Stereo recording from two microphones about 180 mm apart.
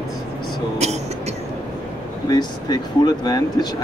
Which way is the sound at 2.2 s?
20° left (ahead or behind).